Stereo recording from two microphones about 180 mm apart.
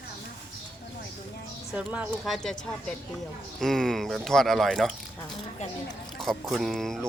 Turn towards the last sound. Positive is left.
turn(degrees=0)  # may be behind; listen again after turning